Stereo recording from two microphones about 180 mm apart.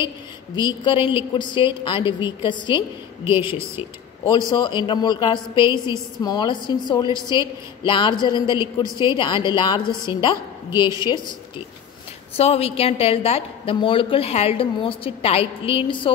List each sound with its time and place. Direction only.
0.6 s a woman's voice: 25° left (ahead or behind)
3.3 s a woman's voice: 15° right (ahead or behind)
4.5 s a woman's voice: 25° left (ahead or behind)